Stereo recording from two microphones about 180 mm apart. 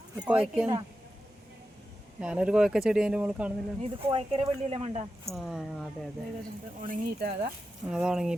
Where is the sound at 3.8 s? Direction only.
30° right (ahead or behind).